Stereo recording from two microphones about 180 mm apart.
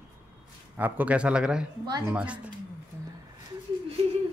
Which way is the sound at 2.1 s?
5° right (ahead or behind).